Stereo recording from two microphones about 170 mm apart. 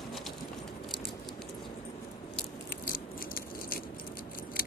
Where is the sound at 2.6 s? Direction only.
60° left (ahead or behind).